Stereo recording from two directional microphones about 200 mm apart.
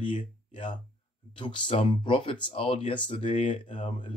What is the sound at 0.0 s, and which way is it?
Speech, 25° left (ahead or behind).